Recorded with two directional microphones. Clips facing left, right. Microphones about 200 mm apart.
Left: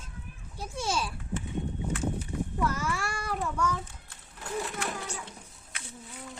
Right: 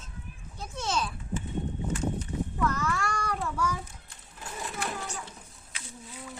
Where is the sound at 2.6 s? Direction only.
10° left (ahead or behind).